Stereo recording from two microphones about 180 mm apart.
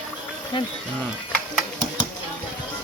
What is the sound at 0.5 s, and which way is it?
Speech, 25° left (ahead or behind).